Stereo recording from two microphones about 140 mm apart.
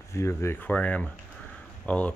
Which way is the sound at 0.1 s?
20° left (ahead or behind).